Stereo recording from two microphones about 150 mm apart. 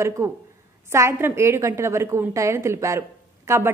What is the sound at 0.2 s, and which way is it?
A woman's voice, 20° right (ahead or behind).